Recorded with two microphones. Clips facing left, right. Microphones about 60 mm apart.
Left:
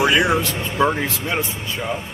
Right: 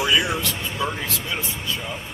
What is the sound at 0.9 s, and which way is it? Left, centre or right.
Speech, left.